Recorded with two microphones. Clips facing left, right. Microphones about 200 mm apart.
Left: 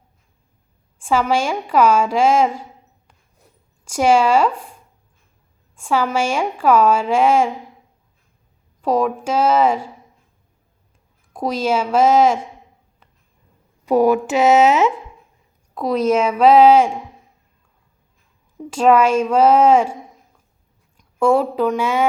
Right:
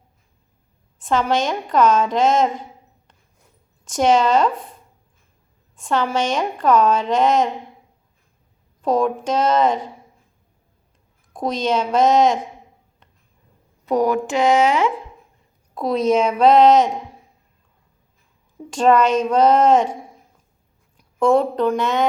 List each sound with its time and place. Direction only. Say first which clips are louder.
1.0 s a woman's voice: left 1 dB; 10° left (ahead or behind)
3.8 s a woman's voice: left 1 dB; 10° left (ahead or behind)
5.8 s a woman's voice: left 1 dB; 10° left (ahead or behind)
8.8 s a woman's voice: even; 5° left (ahead or behind)
11.3 s a woman's voice: left 1 dB; 5° left (ahead or behind)
14.0 s a woman's voice: left 3 dB; 10° left (ahead or behind)
18.7 s a woman's voice: left 1 dB; 5° left (ahead or behind)
21.2 s a woman's voice: even; 5° left (ahead or behind)